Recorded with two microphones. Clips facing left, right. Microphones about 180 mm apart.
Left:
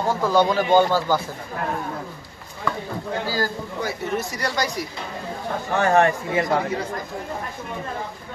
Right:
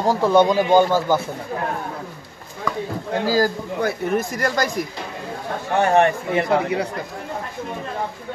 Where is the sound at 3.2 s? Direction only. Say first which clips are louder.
Right 8 dB; 40° right (ahead or behind).